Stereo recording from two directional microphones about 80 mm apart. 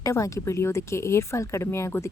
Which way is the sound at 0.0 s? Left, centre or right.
Left.